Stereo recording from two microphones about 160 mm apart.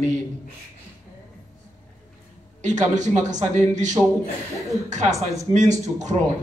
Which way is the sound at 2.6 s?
50° right (ahead or behind).